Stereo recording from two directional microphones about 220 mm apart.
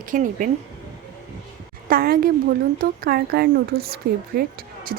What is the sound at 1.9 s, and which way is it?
A woman's voice, 40° right (ahead or behind).